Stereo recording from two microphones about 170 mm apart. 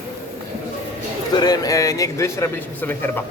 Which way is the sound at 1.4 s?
25° left (ahead or behind).